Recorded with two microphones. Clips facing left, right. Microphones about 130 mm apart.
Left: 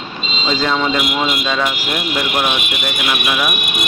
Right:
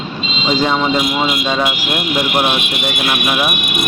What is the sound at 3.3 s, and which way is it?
Speech, 20° right (ahead or behind).